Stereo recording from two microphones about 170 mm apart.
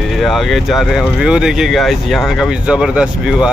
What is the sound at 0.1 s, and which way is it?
Speech, centre (ahead or behind).